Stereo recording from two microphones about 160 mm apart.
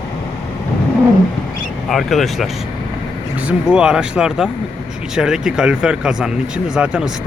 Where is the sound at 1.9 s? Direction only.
Centre (ahead or behind).